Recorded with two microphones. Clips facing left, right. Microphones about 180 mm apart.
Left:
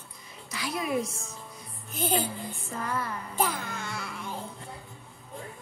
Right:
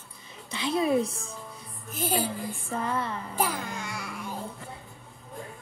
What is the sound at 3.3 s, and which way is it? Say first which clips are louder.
Music: even; 10° right (ahead or behind).